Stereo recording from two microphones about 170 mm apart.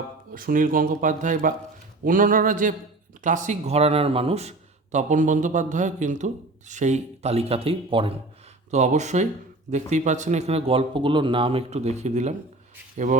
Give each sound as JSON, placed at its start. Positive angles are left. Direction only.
{"t": 0.3, "sound": "speech", "side_deg": -55}
{"t": 8.7, "sound": "speech", "side_deg": -45}